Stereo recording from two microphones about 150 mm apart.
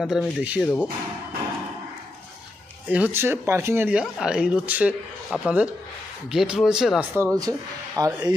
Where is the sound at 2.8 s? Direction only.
10° right (ahead or behind).